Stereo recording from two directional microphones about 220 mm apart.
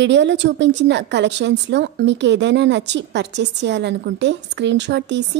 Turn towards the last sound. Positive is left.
turn(degrees=-50)  # may be behind; listen again after turning